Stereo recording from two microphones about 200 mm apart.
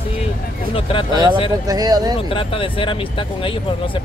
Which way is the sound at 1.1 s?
20° right (ahead or behind).